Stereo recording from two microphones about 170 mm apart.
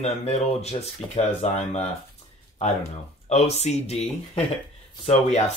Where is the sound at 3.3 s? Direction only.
40° left (ahead or behind).